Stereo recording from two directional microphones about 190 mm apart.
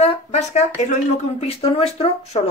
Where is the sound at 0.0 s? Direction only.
35° left (ahead or behind).